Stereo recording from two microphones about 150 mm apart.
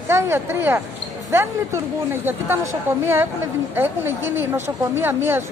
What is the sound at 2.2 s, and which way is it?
A woman's voice, 15° right (ahead or behind).